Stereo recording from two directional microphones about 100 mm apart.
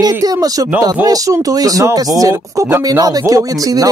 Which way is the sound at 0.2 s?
40° right (ahead or behind).